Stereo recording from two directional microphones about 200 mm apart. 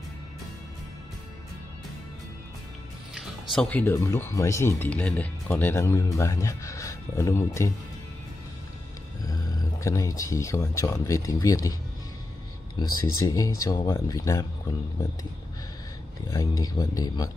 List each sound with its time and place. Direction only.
3.2 s speech: centre (ahead or behind)
9.2 s speech: 15° left (ahead or behind)
12.8 s speech: 20° left (ahead or behind)
16.6 s speech: 20° left (ahead or behind)